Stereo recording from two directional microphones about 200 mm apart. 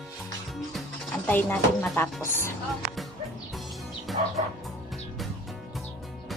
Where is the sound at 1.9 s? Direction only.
15° left (ahead or behind).